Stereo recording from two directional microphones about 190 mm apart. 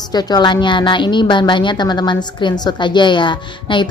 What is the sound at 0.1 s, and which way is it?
A woman's voice, 20° left (ahead or behind).